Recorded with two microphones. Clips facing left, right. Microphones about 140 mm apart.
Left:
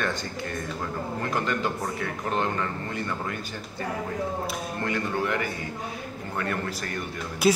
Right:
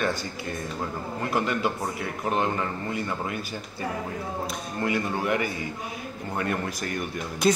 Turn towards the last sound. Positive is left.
turn(degrees=5)  # may be behind; listen again after turning